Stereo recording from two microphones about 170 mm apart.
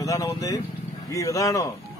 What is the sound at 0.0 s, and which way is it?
Vehicle, 20° left (ahead or behind).